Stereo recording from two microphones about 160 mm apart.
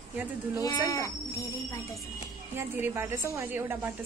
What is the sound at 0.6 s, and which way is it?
A woman's voice, 20° left (ahead or behind).